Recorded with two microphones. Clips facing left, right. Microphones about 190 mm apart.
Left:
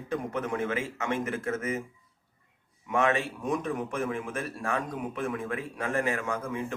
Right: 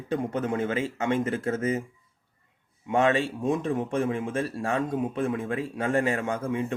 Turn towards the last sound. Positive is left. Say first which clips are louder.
# right 4 dB
turn(degrees=-30)  # may be behind; listen again after turning